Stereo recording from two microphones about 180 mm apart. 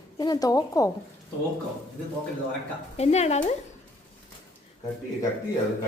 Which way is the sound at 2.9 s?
35° left (ahead or behind).